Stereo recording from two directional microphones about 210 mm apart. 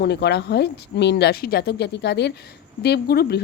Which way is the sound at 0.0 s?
55° left (ahead or behind).